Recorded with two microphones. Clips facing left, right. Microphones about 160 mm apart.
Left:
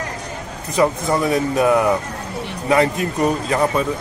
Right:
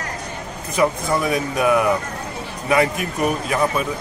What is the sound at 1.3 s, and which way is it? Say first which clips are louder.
A man's voice: left 3 dB; 25° left (ahead or behind).